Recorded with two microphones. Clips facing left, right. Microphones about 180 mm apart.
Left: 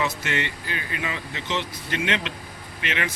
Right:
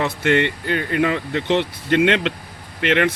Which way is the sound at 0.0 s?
60° right (ahead or behind).